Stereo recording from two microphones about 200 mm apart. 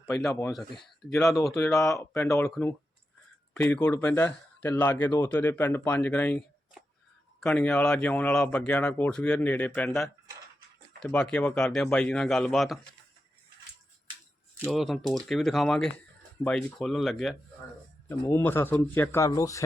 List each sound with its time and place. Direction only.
0.3 s speech: 15° left (ahead or behind)
1.9 s speech: 15° left (ahead or behind); by 12.8 s centre (ahead or behind)
14.7 s speech: centre (ahead or behind)
18.1 s speech: 10° left (ahead or behind)